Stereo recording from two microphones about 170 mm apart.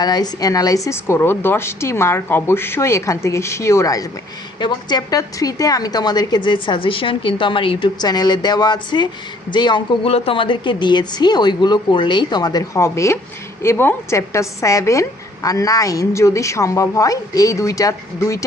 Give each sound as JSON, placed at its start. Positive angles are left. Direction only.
{"t": 0.0, "sound": "a woman's voice", "side_deg": 25}